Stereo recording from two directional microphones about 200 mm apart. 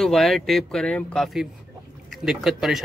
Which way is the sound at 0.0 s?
Centre (ahead or behind).